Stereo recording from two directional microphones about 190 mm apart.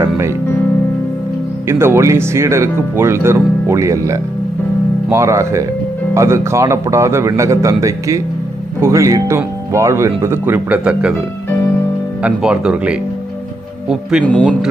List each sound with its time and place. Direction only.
1.6 s speech: 15° right (ahead or behind)
12.2 s speech: 5° right (ahead or behind)